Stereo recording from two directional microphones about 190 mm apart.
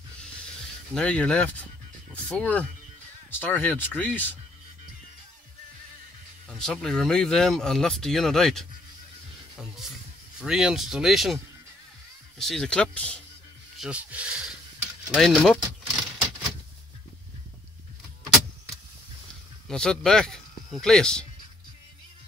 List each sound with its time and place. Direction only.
0.9 s speech: 5° left (ahead or behind)
6.6 s speech: centre (ahead or behind)
12.4 s speech: centre (ahead or behind)
13.7 s speech: 5° right (ahead or behind)
15.0 s keys jangling: centre (ahead or behind)
19.7 s speech: 5° left (ahead or behind)